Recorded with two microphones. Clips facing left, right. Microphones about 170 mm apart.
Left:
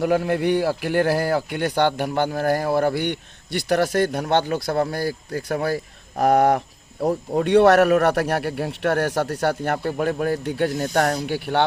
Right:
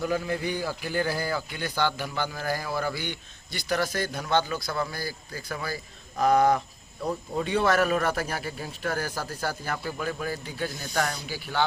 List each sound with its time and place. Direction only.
0.0 s a man's voice: 70° left (ahead or behind)
7.3 s a man's voice: 75° left (ahead or behind)